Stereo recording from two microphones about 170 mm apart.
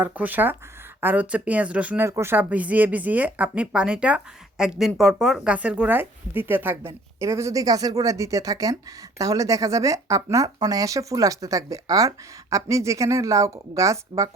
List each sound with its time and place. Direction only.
0.0 s speech: 10° right (ahead or behind)